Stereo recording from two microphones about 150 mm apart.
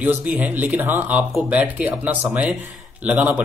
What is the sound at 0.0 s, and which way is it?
A man's voice, 10° right (ahead or behind).